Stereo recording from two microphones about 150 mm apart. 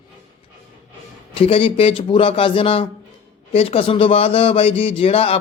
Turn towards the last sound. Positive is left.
turn(degrees=40)  # may be behind; listen again after turning